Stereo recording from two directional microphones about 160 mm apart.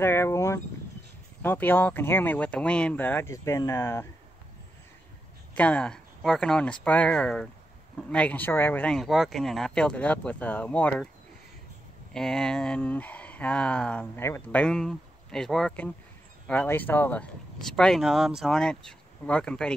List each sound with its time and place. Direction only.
0.0 s speech: 15° left (ahead or behind)
5.5 s speech: 10° left (ahead or behind)
12.1 s speech: 5° left (ahead or behind)